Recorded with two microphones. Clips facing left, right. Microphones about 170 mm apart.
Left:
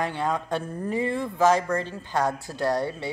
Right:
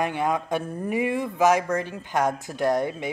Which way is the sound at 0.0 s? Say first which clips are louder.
Right 2 dB; 15° right (ahead or behind).